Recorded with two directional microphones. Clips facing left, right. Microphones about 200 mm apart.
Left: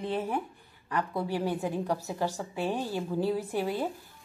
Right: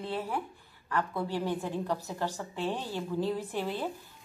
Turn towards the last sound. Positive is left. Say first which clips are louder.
# left 3 dB
turn(degrees=10)  # may be behind; listen again after turning